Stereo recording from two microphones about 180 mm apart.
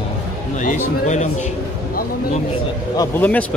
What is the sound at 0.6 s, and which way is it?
Speech, 40° left (ahead or behind).